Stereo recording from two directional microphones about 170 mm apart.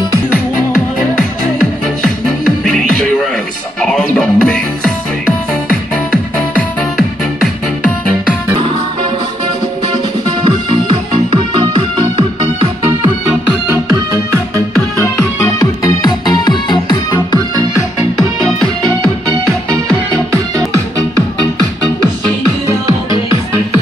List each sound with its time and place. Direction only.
1.1 s music: 5° left (ahead or behind)
3.8 s music: 5° left (ahead or behind)
6.5 s music: centre (ahead or behind)
10.4 s music: 30° right (ahead or behind)
13.8 s music: 20° right (ahead or behind)
15.8 s music: 20° left (ahead or behind)